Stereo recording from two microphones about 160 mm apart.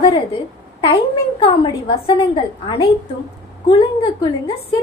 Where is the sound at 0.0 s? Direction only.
35° left (ahead or behind).